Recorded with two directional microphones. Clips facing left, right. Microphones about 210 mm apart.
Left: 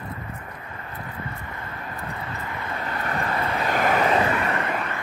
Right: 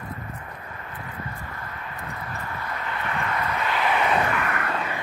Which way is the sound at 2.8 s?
40° left (ahead or behind).